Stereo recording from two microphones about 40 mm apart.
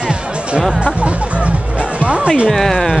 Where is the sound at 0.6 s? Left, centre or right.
Right.